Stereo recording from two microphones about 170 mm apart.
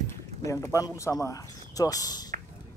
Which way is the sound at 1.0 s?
20° left (ahead or behind).